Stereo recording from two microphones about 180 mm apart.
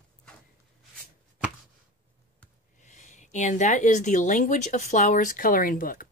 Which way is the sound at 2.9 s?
40° left (ahead or behind).